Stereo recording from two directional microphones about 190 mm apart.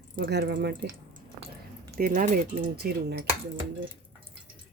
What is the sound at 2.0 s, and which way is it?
Speech, 50° right (ahead or behind).